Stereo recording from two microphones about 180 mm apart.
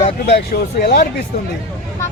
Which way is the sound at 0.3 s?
60° left (ahead or behind).